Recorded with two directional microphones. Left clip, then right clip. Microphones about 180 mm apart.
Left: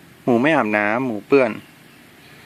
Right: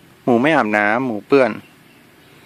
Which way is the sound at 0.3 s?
10° right (ahead or behind).